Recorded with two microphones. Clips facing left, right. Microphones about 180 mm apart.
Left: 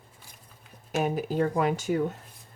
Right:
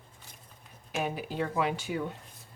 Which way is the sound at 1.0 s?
45° left (ahead or behind).